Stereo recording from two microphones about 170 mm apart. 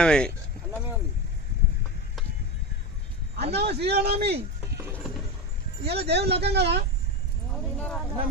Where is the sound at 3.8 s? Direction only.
70° right (ahead or behind).